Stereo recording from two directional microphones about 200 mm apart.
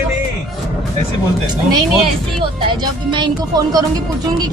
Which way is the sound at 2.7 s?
25° right (ahead or behind).